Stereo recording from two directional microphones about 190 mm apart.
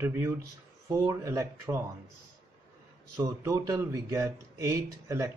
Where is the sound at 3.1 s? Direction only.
15° right (ahead or behind).